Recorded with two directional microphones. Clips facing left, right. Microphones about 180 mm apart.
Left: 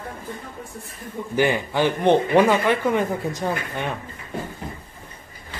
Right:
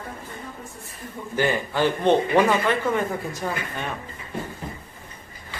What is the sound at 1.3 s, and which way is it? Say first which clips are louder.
Speech: left 2 dB; 15° left (ahead or behind).